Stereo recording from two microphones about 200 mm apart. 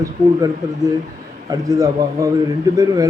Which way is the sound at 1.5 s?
15° right (ahead or behind).